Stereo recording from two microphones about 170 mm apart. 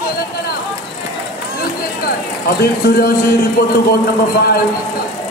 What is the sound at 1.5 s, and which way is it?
Speech, 65° left (ahead or behind).